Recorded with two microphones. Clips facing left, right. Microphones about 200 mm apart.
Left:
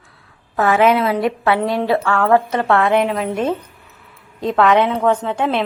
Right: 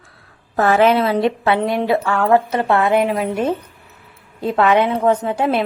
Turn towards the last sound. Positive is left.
turn(degrees=-5)  # may be behind; listen again after turning